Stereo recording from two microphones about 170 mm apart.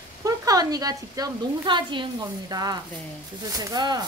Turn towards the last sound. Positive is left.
turn(degrees=-25)  # may be behind; listen again after turning